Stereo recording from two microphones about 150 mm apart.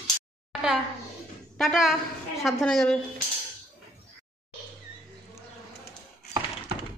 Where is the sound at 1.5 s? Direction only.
Centre (ahead or behind).